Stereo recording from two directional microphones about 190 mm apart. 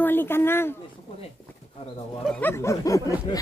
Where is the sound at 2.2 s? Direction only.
10° left (ahead or behind).